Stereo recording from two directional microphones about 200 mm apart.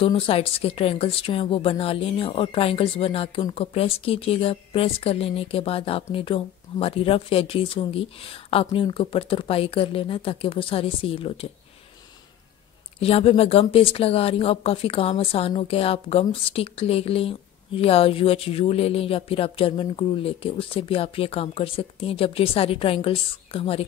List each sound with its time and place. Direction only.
0.0 s speech: 30° left (ahead or behind)
13.0 s speech: 30° left (ahead or behind)